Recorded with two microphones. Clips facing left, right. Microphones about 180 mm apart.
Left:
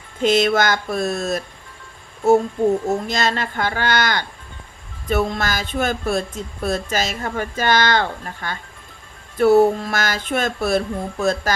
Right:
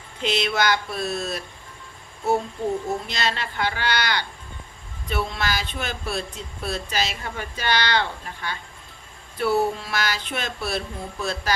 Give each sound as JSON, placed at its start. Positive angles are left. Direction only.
{"t": 0.2, "sound": "speech", "side_deg": 45}
{"t": 2.6, "sound": "speech", "side_deg": 90}
{"t": 3.1, "sound": "speech", "side_deg": 45}